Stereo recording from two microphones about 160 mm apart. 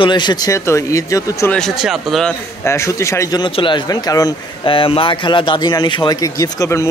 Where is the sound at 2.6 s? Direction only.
20° left (ahead or behind).